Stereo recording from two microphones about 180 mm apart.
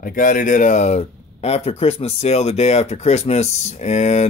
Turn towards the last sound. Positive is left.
turn(degrees=40)  # may be behind; listen again after turning